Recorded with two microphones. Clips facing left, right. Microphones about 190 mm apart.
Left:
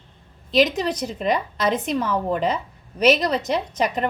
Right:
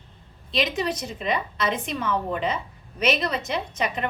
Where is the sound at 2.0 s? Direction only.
40° left (ahead or behind).